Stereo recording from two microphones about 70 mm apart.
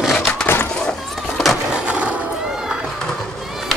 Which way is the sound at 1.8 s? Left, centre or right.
Centre.